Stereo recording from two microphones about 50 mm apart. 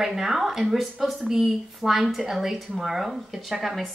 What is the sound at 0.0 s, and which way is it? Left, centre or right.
A woman's voice, centre.